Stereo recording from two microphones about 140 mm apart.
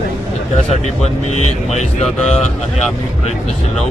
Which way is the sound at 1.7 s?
55° left (ahead or behind).